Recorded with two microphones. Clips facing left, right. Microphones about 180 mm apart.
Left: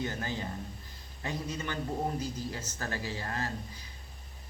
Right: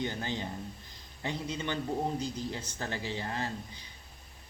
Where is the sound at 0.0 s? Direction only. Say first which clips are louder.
Right 1 dB; 25° right (ahead or behind).